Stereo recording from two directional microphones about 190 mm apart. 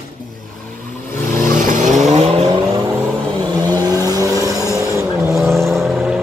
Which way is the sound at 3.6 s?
20° right (ahead or behind).